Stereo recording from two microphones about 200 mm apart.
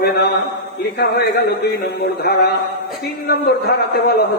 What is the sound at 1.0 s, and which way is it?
Mantra, 55° left (ahead or behind).